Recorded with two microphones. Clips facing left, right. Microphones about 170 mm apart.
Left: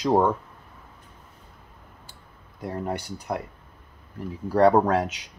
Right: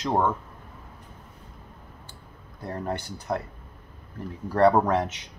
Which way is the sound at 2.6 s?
10° left (ahead or behind).